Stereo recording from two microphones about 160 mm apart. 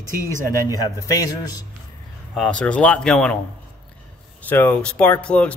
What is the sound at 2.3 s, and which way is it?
Speech, 5° left (ahead or behind).